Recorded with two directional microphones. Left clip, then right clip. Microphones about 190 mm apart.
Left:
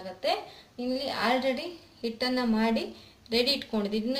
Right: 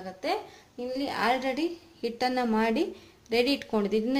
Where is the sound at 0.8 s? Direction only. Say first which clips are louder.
Even; 45° right (ahead or behind).